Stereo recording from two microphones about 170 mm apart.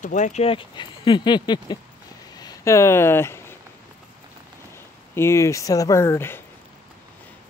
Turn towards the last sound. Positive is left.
turn(degrees=15)  # may be behind; listen again after turning